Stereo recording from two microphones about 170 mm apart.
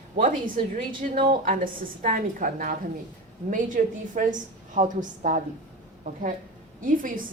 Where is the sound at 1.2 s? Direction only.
50° right (ahead or behind).